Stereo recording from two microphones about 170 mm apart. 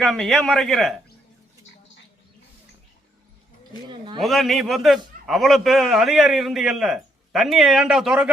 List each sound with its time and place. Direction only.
0.0 s a man's voice: centre (ahead or behind)
3.8 s a man's voice: 25° right (ahead or behind)
4.2 s a man's voice: centre (ahead or behind)